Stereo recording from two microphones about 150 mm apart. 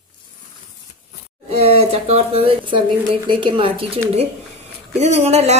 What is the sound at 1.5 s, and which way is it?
A woman's voice, 40° right (ahead or behind).